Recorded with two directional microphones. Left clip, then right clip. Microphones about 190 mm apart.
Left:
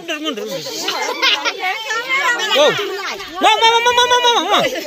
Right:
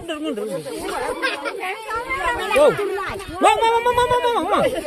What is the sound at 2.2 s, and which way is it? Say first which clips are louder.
Speech: left 5 dB; 60° right (ahead or behind).